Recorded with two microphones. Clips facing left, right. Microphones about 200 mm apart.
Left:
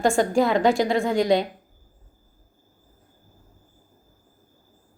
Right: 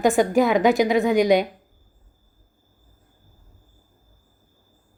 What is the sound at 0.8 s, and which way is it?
Speech, 5° right (ahead or behind).